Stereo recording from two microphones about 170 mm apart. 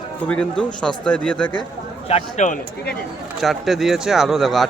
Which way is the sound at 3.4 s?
Centre (ahead or behind).